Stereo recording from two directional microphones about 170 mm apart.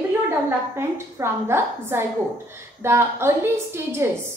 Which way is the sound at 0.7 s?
15° right (ahead or behind).